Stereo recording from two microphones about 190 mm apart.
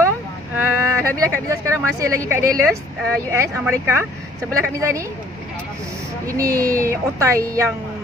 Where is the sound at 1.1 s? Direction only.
15° right (ahead or behind).